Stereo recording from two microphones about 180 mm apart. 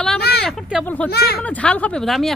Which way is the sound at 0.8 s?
10° left (ahead or behind).